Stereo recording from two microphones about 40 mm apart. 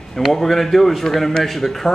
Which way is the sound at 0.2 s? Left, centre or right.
Centre.